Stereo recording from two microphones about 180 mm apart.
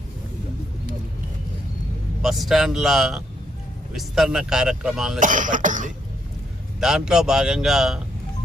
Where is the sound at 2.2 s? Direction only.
Centre (ahead or behind).